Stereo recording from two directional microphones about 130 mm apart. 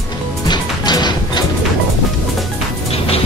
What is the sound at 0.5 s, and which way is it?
Music, 35° left (ahead or behind).